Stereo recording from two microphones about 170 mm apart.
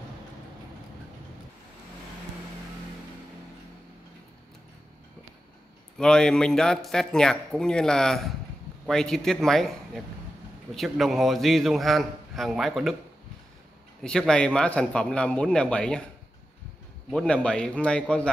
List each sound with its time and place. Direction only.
5.9 s a man's voice: 5° left (ahead or behind)
14.0 s a man's voice: 5° left (ahead or behind)
17.1 s a man's voice: 5° left (ahead or behind)